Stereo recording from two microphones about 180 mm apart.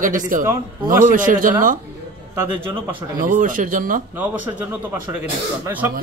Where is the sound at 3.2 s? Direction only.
50° right (ahead or behind).